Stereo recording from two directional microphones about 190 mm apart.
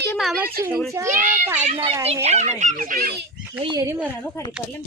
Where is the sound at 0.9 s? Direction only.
15° right (ahead or behind).